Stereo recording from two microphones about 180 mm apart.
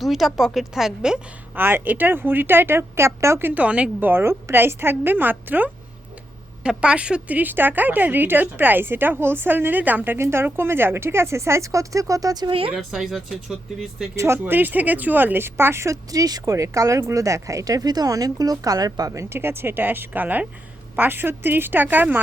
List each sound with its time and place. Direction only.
0.0 s speech: centre (ahead or behind); by 12.7 s 30° right (ahead or behind)
12.7 s speech: centre (ahead or behind)
14.2 s speech: 10° right (ahead or behind)